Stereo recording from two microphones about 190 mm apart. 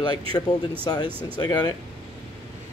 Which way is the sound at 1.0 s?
10° right (ahead or behind).